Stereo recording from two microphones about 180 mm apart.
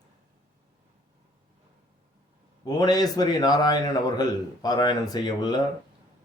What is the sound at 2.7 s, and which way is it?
A man's voice, 20° left (ahead or behind).